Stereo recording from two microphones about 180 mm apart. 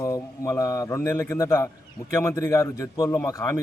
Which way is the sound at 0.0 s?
15° left (ahead or behind).